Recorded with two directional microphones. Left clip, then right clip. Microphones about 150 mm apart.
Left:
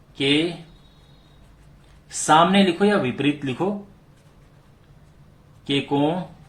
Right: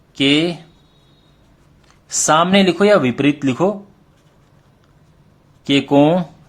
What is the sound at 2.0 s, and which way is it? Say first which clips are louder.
Speech: right 2 dB; 90° right.